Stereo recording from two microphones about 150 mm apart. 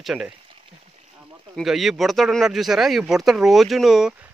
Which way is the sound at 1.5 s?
Centre (ahead or behind).